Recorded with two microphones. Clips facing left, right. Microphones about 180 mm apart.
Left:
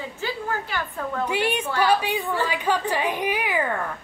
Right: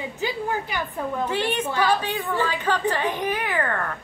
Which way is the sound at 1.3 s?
10° left (ahead or behind).